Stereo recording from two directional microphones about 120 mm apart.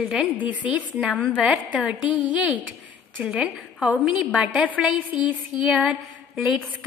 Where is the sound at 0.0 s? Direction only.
5° right (ahead or behind).